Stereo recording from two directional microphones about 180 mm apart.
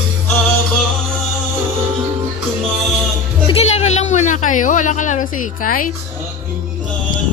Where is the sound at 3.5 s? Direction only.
35° left (ahead or behind).